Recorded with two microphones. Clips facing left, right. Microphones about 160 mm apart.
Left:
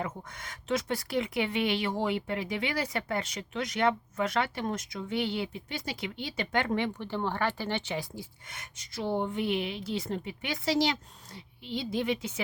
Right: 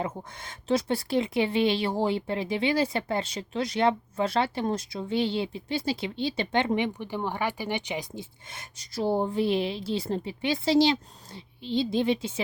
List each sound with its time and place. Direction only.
0.0 s a woman's voice: 30° right (ahead or behind)
8.8 s a woman's voice: 35° right (ahead or behind)